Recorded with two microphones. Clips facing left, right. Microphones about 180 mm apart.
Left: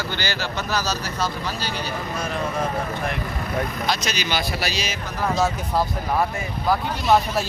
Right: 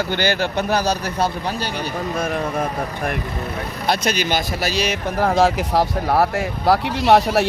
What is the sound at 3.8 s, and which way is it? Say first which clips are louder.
Speech: right 5 dB; 55° right (ahead or behind).